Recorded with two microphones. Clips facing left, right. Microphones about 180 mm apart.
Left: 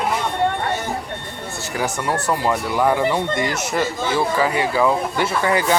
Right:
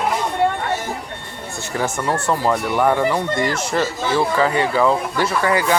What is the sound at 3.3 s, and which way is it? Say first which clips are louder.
Speech: right 2 dB; 25° left (ahead or behind).